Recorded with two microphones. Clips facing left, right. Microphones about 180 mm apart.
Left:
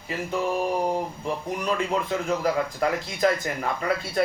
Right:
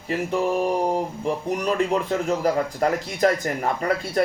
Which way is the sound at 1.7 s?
40° right (ahead or behind).